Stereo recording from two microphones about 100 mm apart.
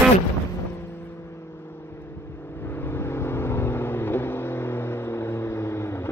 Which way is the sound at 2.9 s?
25° left (ahead or behind).